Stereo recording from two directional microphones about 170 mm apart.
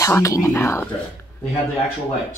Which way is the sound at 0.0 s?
20° left (ahead or behind).